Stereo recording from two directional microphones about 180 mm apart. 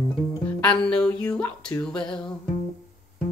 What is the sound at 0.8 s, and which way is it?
Music, 5° left (ahead or behind).